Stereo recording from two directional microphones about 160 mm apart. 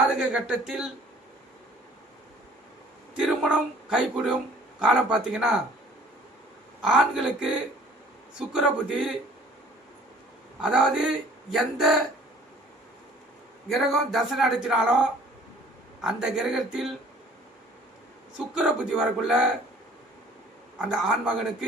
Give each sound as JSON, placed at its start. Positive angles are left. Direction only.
{"t": 0.1, "sound": "speech", "side_deg": -5}
{"t": 3.2, "sound": "speech", "side_deg": -5}
{"t": 6.8, "sound": "speech", "side_deg": -5}
{"t": 10.6, "sound": "speech", "side_deg": -5}
{"t": 13.7, "sound": "speech", "side_deg": 0}
{"t": 18.3, "sound": "speech", "side_deg": -5}
{"t": 20.7, "sound": "speech", "side_deg": -5}